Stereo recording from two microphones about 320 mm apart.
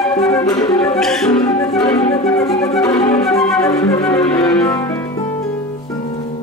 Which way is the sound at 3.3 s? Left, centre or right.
Centre.